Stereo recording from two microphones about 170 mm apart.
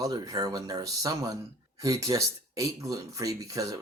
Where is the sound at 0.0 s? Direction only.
20° right (ahead or behind).